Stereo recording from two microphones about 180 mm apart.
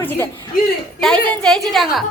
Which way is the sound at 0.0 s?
10° left (ahead or behind).